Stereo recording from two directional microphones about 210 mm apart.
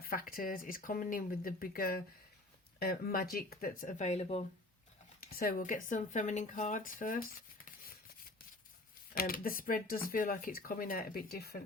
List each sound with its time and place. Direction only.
0.0 s speech: 45° left (ahead or behind)
5.2 s speech: 45° left (ahead or behind)
9.1 s speech: 45° left (ahead or behind)